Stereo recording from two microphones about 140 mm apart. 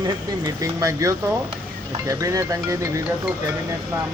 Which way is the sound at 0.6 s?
25° right (ahead or behind).